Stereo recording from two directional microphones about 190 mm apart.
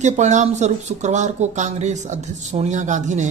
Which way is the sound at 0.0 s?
40° right (ahead or behind).